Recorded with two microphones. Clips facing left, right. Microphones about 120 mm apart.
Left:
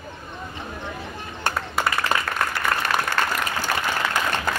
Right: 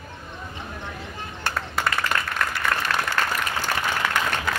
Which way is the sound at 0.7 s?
10° left (ahead or behind).